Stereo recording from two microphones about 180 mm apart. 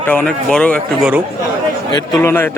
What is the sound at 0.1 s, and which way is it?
Speech, 5° left (ahead or behind).